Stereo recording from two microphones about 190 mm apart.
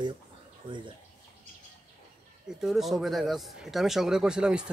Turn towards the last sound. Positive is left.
turn(degrees=-5)  # may be behind; listen again after turning